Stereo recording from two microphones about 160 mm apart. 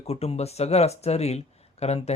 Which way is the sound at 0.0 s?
40° left (ahead or behind).